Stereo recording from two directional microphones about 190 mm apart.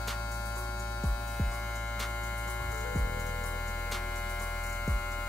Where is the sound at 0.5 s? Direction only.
10° left (ahead or behind).